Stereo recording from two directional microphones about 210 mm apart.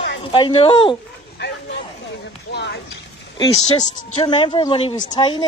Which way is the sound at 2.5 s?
55° left (ahead or behind).